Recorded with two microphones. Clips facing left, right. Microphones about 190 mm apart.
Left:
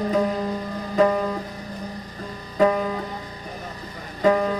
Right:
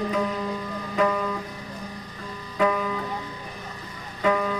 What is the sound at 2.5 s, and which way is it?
Music, 40° left (ahead or behind).